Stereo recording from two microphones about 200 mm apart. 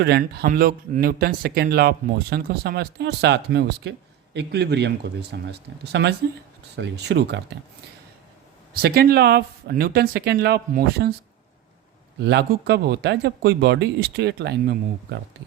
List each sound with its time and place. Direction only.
0.0 s speech: 50° right (ahead or behind)
8.7 s speech: 50° right (ahead or behind)
12.2 s speech: 60° right (ahead or behind)